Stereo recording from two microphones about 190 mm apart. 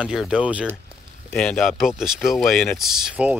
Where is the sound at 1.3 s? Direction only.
5° left (ahead or behind).